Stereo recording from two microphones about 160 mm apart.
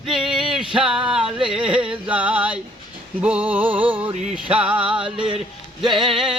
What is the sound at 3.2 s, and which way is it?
Music, 10° right (ahead or behind).